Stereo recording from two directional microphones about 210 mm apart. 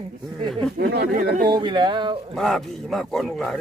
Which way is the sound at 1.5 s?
20° right (ahead or behind).